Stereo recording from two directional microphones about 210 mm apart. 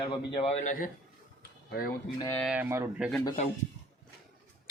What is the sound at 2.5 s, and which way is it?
Speech, 10° right (ahead or behind).